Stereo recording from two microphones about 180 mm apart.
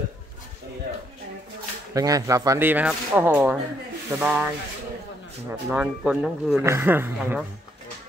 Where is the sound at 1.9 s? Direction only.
20° right (ahead or behind).